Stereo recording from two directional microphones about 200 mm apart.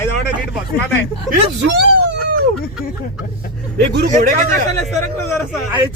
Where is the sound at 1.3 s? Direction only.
50° right (ahead or behind).